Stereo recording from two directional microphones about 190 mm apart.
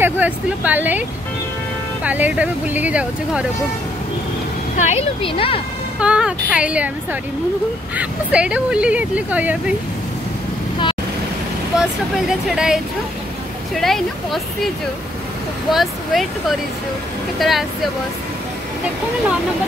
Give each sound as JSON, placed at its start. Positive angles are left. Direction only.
{"t": 0.0, "sound": "speech", "side_deg": -10}
{"t": 2.0, "sound": "speech", "side_deg": -10}
{"t": 4.7, "sound": "a woman's voice", "side_deg": 35}
{"t": 5.9, "sound": "speech", "side_deg": -5}
{"t": 11.7, "sound": "speech", "side_deg": 0}
{"t": 15.7, "sound": "speech", "side_deg": 0}